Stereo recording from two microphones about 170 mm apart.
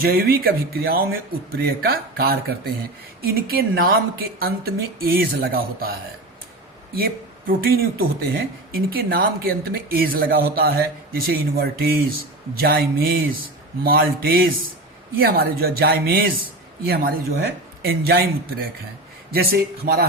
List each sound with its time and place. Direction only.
0.0 s speech: 60° right (ahead or behind)
19.3 s speech: 65° right (ahead or behind)